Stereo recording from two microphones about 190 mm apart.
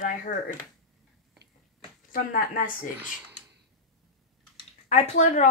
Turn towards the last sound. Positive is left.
turn(degrees=35)  # may be behind; listen again after turning